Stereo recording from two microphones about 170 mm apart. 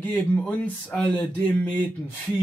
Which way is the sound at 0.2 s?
10° left (ahead or behind).